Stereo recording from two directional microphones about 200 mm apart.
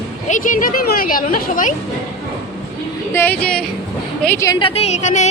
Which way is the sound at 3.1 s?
10° left (ahead or behind).